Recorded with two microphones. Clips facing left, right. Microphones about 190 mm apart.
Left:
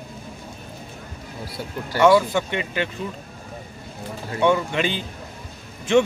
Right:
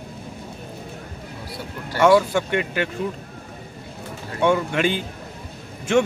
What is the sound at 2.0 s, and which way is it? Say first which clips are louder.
Speech: even; 10° right (ahead or behind).